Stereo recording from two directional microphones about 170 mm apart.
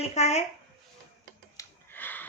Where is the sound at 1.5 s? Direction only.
10° left (ahead or behind).